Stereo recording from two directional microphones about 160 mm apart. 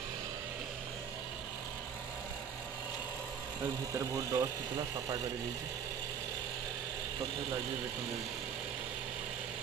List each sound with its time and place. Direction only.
3.9 s speech: 20° right (ahead or behind)